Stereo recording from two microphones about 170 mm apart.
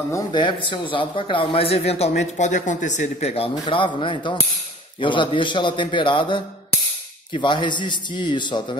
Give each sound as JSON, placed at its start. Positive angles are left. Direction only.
{"t": 0.1, "sound": "a man's voice", "side_deg": 25}